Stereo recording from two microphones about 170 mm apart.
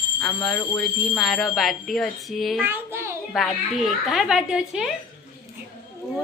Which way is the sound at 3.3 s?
Centre (ahead or behind).